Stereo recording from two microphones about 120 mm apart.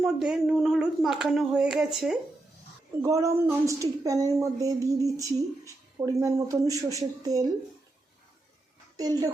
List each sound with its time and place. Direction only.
0.0 s speech: 5° right (ahead or behind)
3.0 s speech: 25° right (ahead or behind)
5.1 s speech: 25° left (ahead or behind)
6.1 s a woman's voice: 25° right (ahead or behind)
9.0 s a woman's voice: 30° right (ahead or behind)